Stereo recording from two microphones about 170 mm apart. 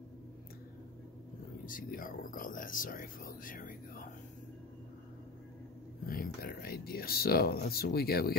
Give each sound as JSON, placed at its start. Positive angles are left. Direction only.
{"t": 1.7, "sound": "speech", "side_deg": 55}
{"t": 6.0, "sound": "speech", "side_deg": 60}